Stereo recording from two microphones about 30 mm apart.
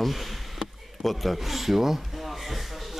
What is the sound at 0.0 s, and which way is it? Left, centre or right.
Speech, centre.